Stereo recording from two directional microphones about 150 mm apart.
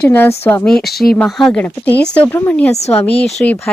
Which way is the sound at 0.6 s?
5° left (ahead or behind).